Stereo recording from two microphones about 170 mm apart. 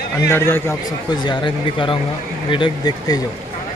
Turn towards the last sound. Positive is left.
turn(degrees=25)  # may be behind; listen again after turning